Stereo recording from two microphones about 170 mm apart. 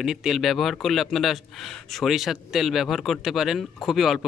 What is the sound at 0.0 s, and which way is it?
A man's voice, centre (ahead or behind).